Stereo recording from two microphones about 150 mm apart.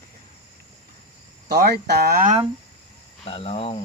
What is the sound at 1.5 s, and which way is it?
Speech, 90° right.